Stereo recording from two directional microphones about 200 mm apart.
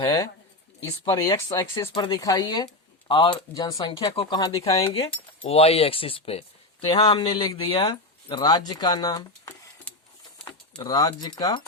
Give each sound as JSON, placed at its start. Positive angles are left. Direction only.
{"t": 0.0, "sound": "speech", "side_deg": 20}
{"t": 5.5, "sound": "speech", "side_deg": 30}